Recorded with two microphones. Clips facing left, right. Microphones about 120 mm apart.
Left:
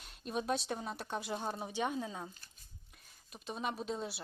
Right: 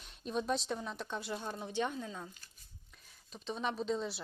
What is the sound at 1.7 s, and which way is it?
Speech, 10° left (ahead or behind).